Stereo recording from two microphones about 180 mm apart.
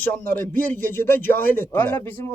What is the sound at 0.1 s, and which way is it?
A man's voice, 10° left (ahead or behind).